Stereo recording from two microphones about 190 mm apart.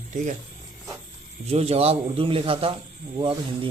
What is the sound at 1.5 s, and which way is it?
A man's voice, 35° right (ahead or behind).